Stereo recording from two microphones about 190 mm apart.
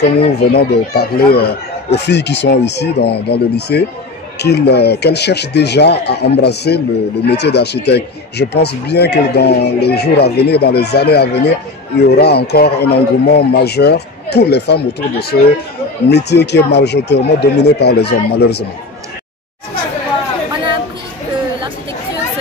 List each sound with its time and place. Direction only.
0.0 s speech: 55° left (ahead or behind)